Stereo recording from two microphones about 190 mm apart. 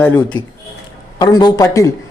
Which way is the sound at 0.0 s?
10° left (ahead or behind).